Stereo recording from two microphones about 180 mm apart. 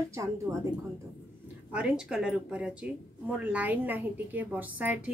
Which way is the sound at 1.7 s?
5° right (ahead or behind).